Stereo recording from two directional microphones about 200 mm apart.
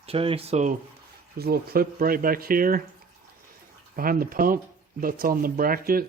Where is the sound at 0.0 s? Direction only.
30° right (ahead or behind).